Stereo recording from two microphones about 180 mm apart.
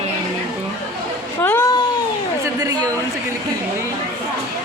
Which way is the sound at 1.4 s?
10° left (ahead or behind).